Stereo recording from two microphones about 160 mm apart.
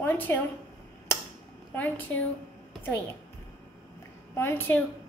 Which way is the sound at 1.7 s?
10° left (ahead or behind).